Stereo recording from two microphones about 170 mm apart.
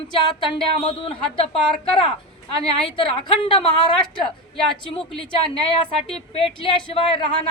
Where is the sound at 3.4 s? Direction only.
30° left (ahead or behind).